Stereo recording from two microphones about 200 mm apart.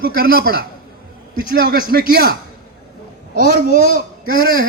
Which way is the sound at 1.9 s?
50° right (ahead or behind).